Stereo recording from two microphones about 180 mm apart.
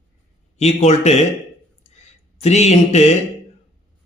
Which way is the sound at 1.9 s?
40° left (ahead or behind).